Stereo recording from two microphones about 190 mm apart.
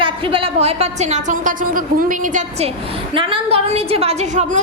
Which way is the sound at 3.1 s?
25° right (ahead or behind).